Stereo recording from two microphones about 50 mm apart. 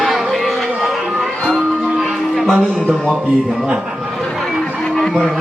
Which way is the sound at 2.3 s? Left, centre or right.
Centre.